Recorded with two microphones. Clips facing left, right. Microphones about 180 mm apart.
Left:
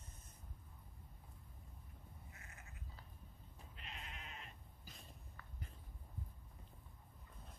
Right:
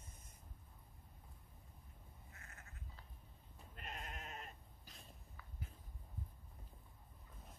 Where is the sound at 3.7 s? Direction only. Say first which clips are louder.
Right 5 dB; 45° right (ahead or behind).